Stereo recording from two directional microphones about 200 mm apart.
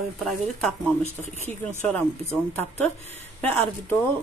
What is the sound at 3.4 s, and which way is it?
Speech, 10° left (ahead or behind).